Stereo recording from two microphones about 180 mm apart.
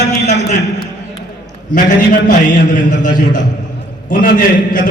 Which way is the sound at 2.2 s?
45° left (ahead or behind).